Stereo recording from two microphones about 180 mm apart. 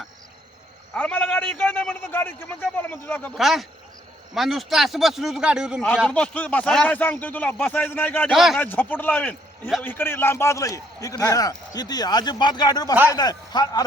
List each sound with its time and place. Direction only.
0.9 s a man's voice: 10° left (ahead or behind)
3.3 s speech: centre (ahead or behind)
6.1 s a man's voice: 5° left (ahead or behind)
8.3 s speech: centre (ahead or behind)
8.5 s a man's voice: 10° left (ahead or behind)